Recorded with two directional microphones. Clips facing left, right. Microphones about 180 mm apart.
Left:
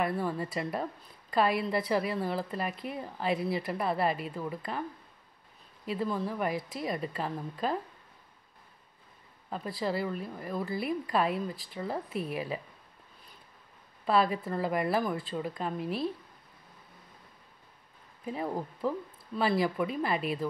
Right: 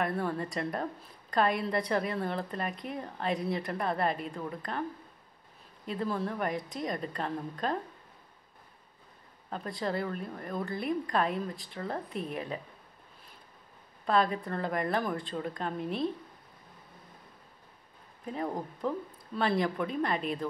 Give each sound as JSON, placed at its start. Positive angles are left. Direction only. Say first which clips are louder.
{"t": 0.0, "sound": "a woman's voice", "louder": "left 1 dB", "side_deg": 0}
{"t": 5.9, "sound": "a woman's voice", "louder": "left 1 dB", "side_deg": 0}
{"t": 9.5, "sound": "a woman's voice", "louder": "left 1 dB", "side_deg": 5}
{"t": 14.0, "sound": "a woman's voice", "louder": "left 1 dB", "side_deg": 5}
{"t": 18.2, "sound": "a woman's voice", "louder": "left 1 dB", "side_deg": 5}